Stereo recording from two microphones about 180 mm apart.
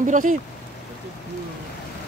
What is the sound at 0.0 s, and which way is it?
Speech, 45° right (ahead or behind).